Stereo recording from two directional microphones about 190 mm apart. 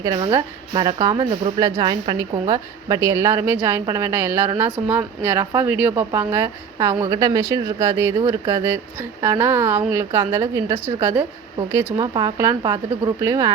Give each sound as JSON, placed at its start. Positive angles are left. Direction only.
{"t": 0.0, "sound": "a woman's voice", "side_deg": -25}
{"t": 11.9, "sound": "a woman's voice", "side_deg": -20}